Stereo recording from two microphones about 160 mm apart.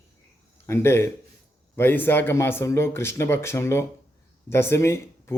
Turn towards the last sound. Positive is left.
turn(degrees=15)  # may be behind; listen again after turning